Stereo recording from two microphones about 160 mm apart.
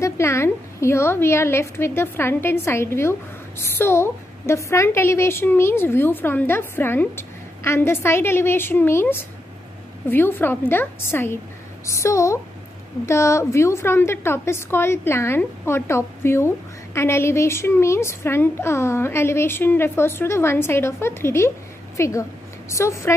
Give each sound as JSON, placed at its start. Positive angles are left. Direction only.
{"t": 0.0, "sound": "a woman's voice", "side_deg": 15}